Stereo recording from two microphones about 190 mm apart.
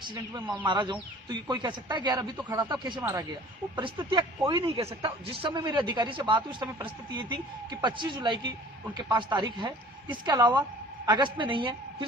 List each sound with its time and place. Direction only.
0.1 s a man's voice: 25° right (ahead or behind)
3.0 s speech: 15° right (ahead or behind)
3.8 s a man's voice: 25° right (ahead or behind)